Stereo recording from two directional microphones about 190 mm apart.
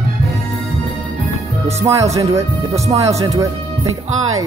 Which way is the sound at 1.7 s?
15° right (ahead or behind).